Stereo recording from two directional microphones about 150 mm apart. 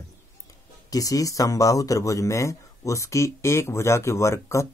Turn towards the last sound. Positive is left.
turn(degrees=20)  # may be behind; listen again after turning